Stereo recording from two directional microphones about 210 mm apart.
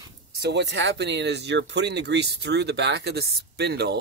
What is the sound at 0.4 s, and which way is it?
Speech, 55° right (ahead or behind).